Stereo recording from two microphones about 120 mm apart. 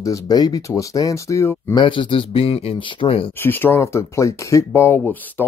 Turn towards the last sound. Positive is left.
turn(degrees=15)  # may be behind; listen again after turning